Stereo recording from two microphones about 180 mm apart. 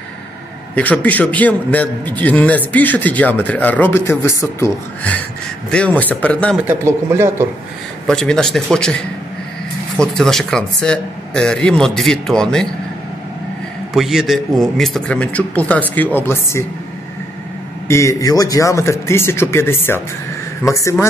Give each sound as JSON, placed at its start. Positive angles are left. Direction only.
{"t": 0.7, "sound": "a man's voice", "side_deg": 10}
{"t": 6.5, "sound": "a man's voice", "side_deg": -15}
{"t": 8.1, "sound": "speech", "side_deg": 5}
{"t": 13.9, "sound": "a man's voice", "side_deg": 0}
{"t": 17.8, "sound": "a man's voice", "side_deg": 15}